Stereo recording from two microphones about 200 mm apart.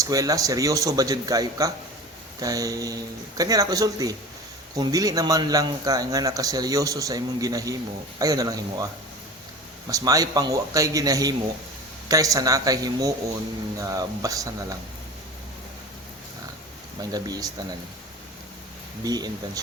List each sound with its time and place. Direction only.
0.0 s a man's voice: 15° right (ahead or behind)
9.9 s a man's voice: 15° right (ahead or behind)
17.0 s speech: 20° right (ahead or behind)
19.0 s speech: 20° right (ahead or behind)